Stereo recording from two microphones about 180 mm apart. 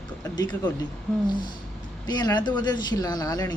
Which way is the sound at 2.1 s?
20° left (ahead or behind).